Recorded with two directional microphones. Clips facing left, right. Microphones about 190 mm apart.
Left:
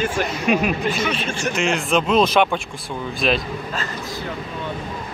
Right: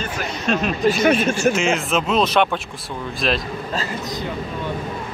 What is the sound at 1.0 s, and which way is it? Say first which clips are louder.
Speech: right 7 dB; 45° right (ahead or behind).